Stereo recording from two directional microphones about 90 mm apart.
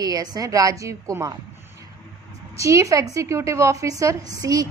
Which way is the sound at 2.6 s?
35° right (ahead or behind).